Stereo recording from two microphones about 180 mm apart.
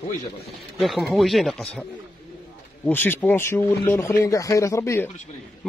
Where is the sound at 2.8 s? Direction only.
10° left (ahead or behind).